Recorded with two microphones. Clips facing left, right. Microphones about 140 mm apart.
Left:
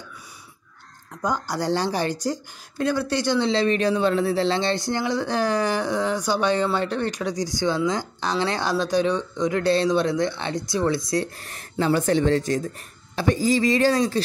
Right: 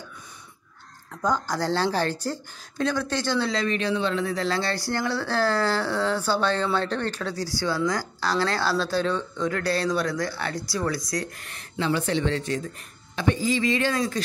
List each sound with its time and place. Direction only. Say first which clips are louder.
1.2 s speech: even; 10° left (ahead or behind)
3.5 s speech: left 5 dB; 35° left (ahead or behind)
11.4 s speech: left 4 dB; 40° left (ahead or behind)